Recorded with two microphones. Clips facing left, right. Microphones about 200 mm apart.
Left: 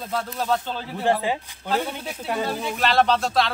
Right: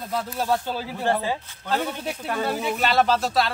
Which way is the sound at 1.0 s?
15° left (ahead or behind).